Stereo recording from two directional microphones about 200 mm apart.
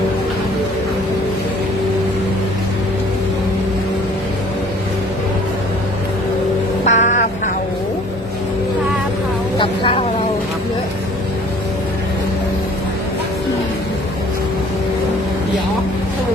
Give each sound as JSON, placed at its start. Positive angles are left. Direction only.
{"t": 6.8, "sound": "music", "side_deg": 35}
{"t": 9.6, "sound": "vehicle", "side_deg": 25}